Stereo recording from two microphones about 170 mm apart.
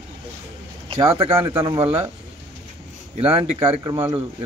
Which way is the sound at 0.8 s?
30° right (ahead or behind).